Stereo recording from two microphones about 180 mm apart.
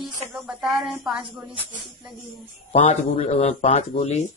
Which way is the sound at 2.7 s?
35° left (ahead or behind).